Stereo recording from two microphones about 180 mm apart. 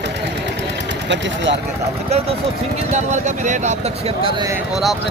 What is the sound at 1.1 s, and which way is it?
Speech, 80° right.